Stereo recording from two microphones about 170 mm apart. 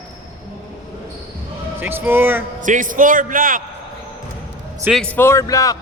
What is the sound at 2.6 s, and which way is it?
A man's voice, 50° right (ahead or behind).